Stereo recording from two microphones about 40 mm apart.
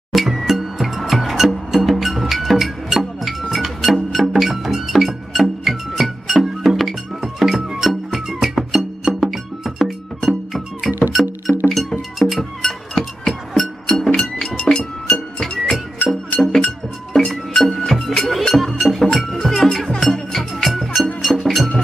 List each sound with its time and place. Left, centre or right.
0.1 s music: centre
11.5 s music: centre
12.2 s music: centre
14.6 s music: left
16.1 s music: centre